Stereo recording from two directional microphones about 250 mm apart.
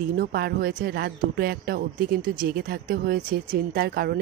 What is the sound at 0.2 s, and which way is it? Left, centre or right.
A woman's voice, right.